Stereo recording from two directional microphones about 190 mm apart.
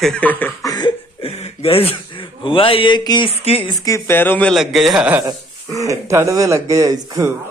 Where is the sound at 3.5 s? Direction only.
30° left (ahead or behind).